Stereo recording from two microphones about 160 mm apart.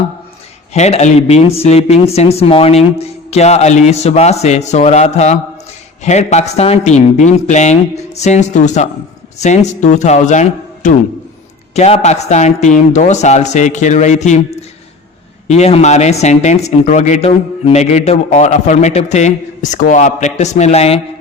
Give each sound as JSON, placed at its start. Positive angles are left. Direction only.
{"t": 0.7, "sound": "speech", "side_deg": 40}
{"t": 15.4, "sound": "speech", "side_deg": 45}